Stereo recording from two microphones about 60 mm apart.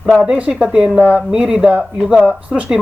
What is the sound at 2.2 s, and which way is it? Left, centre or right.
Speech, centre.